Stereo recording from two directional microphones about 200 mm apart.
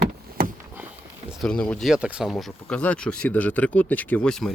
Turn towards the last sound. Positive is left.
turn(degrees=0)  # may be behind; listen again after turning